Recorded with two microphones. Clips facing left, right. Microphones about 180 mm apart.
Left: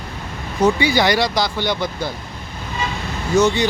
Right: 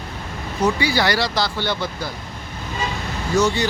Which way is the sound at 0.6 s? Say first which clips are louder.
Left 3 dB; 20° left (ahead or behind).